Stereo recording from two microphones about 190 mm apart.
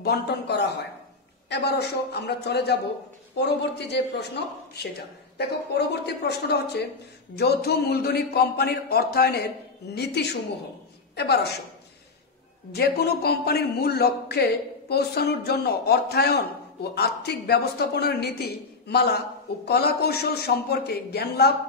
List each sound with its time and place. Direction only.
0.0 s a man's voice: 60° left (ahead or behind)
11.1 s a man's voice: 60° left (ahead or behind)
12.7 s a man's voice: 55° left (ahead or behind)